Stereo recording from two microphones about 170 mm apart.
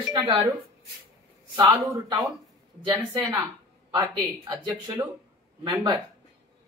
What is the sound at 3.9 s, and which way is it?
Speech, 20° right (ahead or behind).